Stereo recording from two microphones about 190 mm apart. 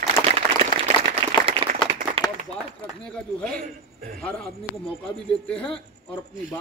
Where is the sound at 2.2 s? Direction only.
30° right (ahead or behind).